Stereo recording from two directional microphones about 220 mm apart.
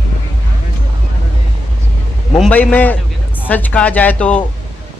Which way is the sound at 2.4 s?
5° left (ahead or behind).